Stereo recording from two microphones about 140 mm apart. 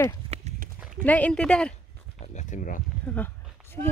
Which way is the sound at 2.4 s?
65° left (ahead or behind).